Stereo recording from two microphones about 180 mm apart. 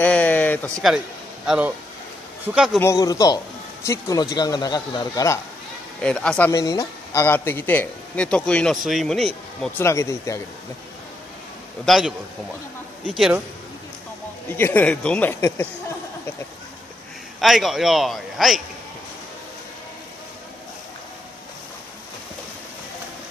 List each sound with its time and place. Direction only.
0.0 s a sound: 10° left (ahead or behind)
0.8 s a man's voice: 5° right (ahead or behind)
2.8 s speech: 20° left (ahead or behind)
5.9 s a man's voice: 5° left (ahead or behind)
6.5 s a man's voice: 20° left (ahead or behind); by 9.7 s centre (ahead or behind)
9.8 s a man's voice: 15° left (ahead or behind)
11.8 s a man's voice: centre (ahead or behind)
13.1 s a man's voice: centre (ahead or behind)
14.6 s a man's voice: 10° left (ahead or behind)
17.4 s a man's voice: centre (ahead or behind)